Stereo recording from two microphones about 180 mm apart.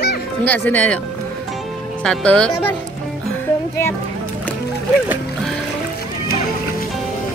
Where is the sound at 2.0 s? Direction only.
5° left (ahead or behind).